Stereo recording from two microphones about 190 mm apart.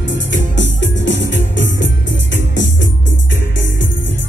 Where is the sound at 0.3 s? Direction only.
70° left (ahead or behind).